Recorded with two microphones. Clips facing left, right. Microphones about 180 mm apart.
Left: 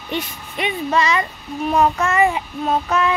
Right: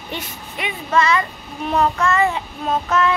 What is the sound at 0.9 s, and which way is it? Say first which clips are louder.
Speech: right 3 dB; 15° left (ahead or behind).